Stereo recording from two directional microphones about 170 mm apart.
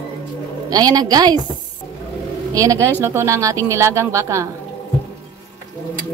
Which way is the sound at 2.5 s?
20° right (ahead or behind).